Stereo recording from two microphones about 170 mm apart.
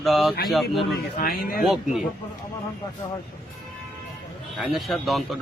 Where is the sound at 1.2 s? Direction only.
60° left (ahead or behind).